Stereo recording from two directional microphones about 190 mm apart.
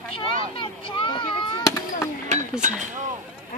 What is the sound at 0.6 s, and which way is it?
Children playing, 25° left (ahead or behind).